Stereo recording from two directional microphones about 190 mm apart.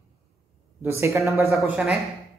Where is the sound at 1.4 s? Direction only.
Centre (ahead or behind).